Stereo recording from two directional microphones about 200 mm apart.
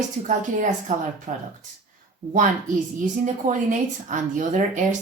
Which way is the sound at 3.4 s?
40° right (ahead or behind).